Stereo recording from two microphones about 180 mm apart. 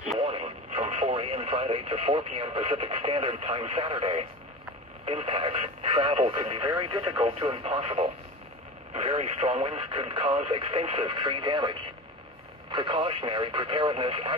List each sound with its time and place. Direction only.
0.2 s speech: 30° right (ahead or behind)